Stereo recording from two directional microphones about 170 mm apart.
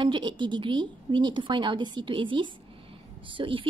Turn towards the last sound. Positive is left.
turn(degrees=-30)  # may be behind; listen again after turning